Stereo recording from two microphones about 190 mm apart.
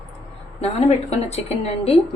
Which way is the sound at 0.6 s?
35° left (ahead or behind).